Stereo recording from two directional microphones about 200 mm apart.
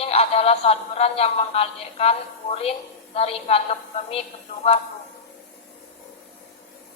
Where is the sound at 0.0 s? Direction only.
30° left (ahead or behind).